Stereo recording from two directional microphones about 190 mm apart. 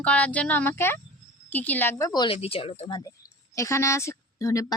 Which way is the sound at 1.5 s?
10° left (ahead or behind).